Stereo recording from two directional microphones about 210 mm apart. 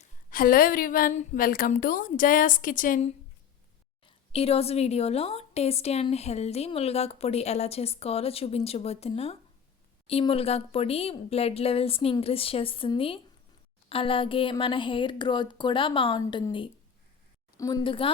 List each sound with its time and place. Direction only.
0.0 s a woman's voice: 40° left (ahead or behind)
4.3 s a woman's voice: 30° left (ahead or behind)